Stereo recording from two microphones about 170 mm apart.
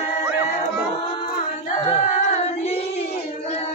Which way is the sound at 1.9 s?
40° left (ahead or behind).